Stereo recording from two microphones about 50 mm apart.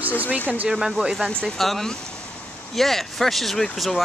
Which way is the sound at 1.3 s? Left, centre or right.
Centre.